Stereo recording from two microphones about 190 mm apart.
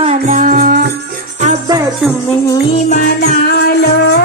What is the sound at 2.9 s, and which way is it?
Music, 45° left (ahead or behind).